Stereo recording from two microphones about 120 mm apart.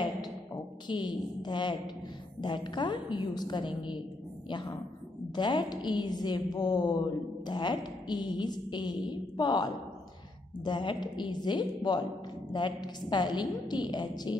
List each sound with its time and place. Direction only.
0.8 s a woman's voice: 40° left (ahead or behind)